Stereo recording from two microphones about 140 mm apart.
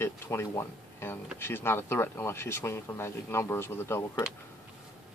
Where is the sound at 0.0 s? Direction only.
15° left (ahead or behind).